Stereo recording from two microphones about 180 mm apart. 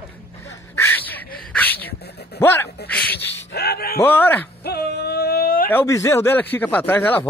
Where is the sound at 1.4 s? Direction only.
10° left (ahead or behind).